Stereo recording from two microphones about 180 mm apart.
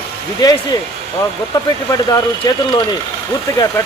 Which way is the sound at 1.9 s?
20° left (ahead or behind).